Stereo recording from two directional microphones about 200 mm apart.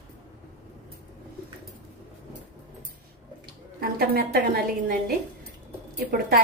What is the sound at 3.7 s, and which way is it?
A woman's voice, 50° right (ahead or behind).